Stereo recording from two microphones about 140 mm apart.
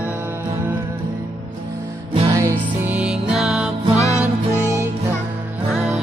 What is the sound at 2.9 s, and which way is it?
Music, 5° right (ahead or behind).